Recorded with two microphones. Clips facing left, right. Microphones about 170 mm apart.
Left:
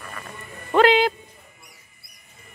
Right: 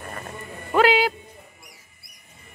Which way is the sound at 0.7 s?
5° right (ahead or behind).